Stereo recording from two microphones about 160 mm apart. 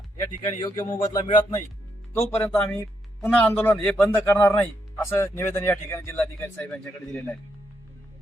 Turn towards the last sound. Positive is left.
turn(degrees=10)  # may be behind; listen again after turning